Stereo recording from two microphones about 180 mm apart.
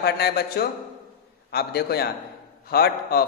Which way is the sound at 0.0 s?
65° left (ahead or behind).